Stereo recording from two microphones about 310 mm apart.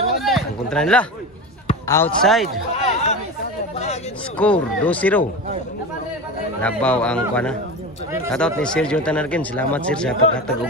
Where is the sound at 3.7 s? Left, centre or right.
Left.